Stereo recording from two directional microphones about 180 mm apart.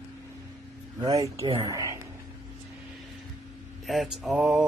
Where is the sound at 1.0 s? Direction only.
20° right (ahead or behind).